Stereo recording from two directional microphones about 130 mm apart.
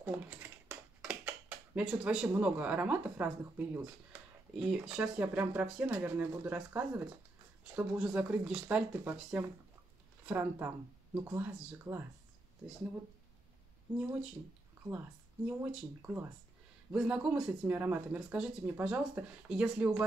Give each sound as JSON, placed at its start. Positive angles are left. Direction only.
{"t": 0.0, "sound": "typing", "side_deg": -15}
{"t": 2.3, "sound": "speech", "side_deg": -10}
{"t": 15.4, "sound": "speech", "side_deg": -15}